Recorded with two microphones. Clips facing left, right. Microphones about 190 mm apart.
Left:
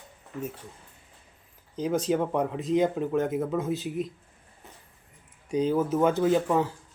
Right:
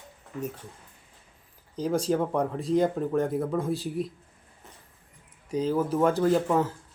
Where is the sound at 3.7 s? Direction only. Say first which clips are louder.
Even; 35° right (ahead or behind).